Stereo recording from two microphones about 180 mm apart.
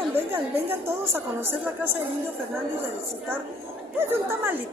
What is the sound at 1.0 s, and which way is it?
Speech, 15° right (ahead or behind).